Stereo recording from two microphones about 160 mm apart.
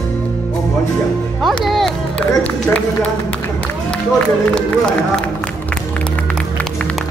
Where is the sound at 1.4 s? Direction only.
Centre (ahead or behind).